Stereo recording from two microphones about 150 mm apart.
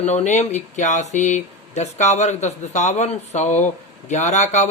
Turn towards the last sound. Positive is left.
turn(degrees=50)  # may be behind; listen again after turning